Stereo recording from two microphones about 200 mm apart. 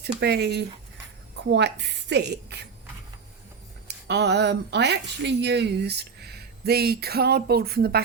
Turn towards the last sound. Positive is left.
turn(degrees=-50)  # may be behind; listen again after turning